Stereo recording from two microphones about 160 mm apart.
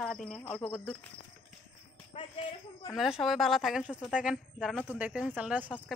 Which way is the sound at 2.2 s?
30° left (ahead or behind).